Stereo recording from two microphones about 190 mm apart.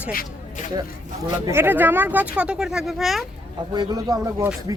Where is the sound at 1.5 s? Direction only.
10° right (ahead or behind).